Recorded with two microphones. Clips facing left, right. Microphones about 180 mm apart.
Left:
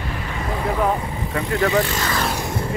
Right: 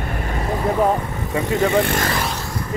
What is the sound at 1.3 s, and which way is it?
Speech, 25° right (ahead or behind).